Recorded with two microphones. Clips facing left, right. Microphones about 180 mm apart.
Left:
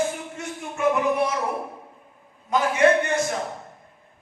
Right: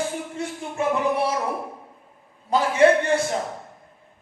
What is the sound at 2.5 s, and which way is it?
Speech, 30° right (ahead or behind).